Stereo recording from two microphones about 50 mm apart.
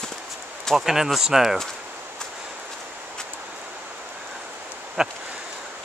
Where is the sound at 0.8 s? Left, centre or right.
Centre.